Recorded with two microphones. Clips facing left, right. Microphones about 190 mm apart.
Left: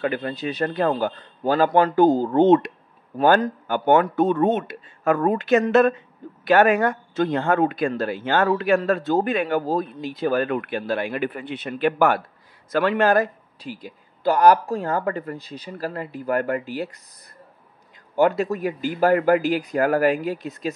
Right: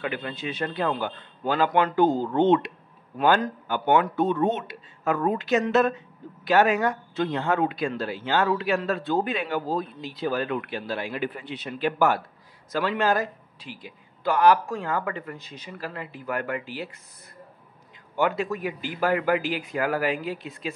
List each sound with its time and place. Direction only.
0.0 s speech: 40° left (ahead or behind)
13.6 s speech: 40° left (ahead or behind)
18.1 s speech: 40° left (ahead or behind)